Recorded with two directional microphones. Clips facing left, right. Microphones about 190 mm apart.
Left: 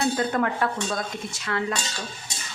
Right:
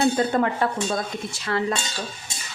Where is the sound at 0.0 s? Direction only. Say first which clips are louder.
Right 3 dB; 30° right (ahead or behind).